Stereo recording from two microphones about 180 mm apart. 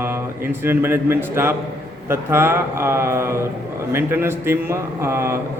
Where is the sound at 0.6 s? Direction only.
10° right (ahead or behind).